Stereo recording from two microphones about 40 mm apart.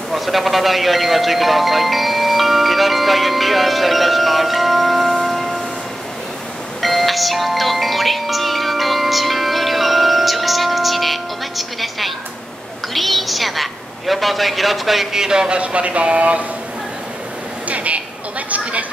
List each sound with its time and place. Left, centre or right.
0.1 s music: centre
6.8 s music: centre
12.9 s a woman's voice: centre
15.1 s speech: centre
17.6 s a woman's voice: right
18.5 s a sound: right